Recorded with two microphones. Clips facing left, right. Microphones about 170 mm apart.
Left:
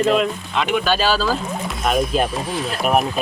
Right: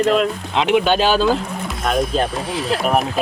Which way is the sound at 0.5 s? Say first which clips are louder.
Right 5 dB; 20° right (ahead or behind).